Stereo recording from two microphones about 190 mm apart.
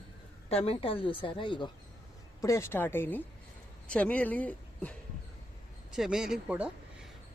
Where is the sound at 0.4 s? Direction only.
30° left (ahead or behind).